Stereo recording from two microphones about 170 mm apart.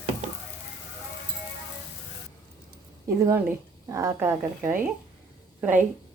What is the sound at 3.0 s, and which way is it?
A woman's voice, 15° right (ahead or behind).